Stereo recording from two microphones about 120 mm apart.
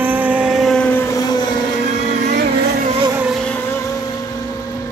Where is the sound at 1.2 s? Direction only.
35° left (ahead or behind).